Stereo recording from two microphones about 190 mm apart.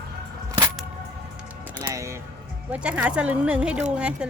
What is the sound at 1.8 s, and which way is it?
Speech, 15° right (ahead or behind).